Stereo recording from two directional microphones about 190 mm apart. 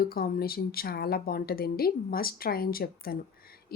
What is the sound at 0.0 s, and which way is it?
Speech, 55° left (ahead or behind).